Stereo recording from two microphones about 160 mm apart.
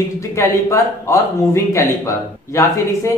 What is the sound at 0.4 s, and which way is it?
Speech, 15° left (ahead or behind).